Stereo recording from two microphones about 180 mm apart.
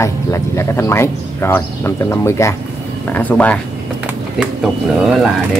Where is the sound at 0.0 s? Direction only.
15° left (ahead or behind).